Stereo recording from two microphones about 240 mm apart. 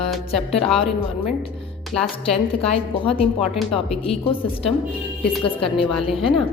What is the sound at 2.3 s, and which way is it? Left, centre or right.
Speech, left.